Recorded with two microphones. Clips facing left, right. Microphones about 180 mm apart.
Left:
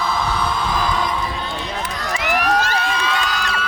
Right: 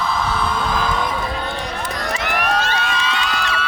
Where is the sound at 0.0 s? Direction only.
Centre (ahead or behind).